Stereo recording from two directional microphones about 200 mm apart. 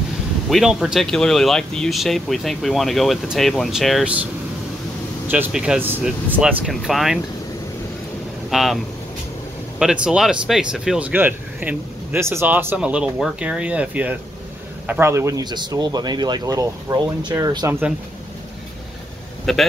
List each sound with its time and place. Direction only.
0.5 s speech: centre (ahead or behind)
5.3 s speech: 5° right (ahead or behind)
8.5 s speech: centre (ahead or behind)
9.8 s speech: 5° right (ahead or behind)
19.5 s speech: centre (ahead or behind)